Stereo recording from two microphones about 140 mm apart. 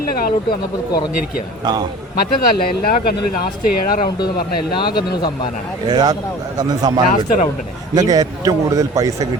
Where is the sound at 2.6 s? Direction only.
90° left.